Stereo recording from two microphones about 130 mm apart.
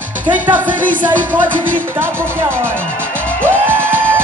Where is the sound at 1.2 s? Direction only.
15° right (ahead or behind).